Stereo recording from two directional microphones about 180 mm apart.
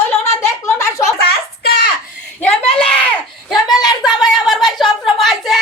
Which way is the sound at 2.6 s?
30° left (ahead or behind).